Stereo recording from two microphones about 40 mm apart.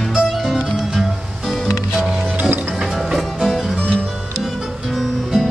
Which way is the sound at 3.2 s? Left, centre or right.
Centre.